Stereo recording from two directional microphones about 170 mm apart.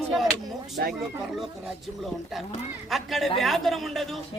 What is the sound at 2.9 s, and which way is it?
Speech, centre (ahead or behind).